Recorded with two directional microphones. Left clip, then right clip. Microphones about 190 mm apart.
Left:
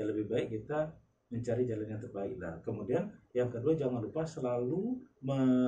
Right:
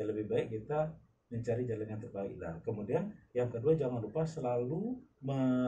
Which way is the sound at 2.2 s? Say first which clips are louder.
Left 1 dB; centre (ahead or behind).